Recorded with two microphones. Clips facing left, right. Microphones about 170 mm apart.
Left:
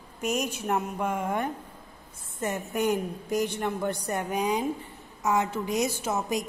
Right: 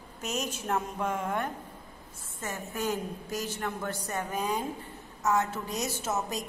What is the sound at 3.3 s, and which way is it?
Speech, 60° left (ahead or behind).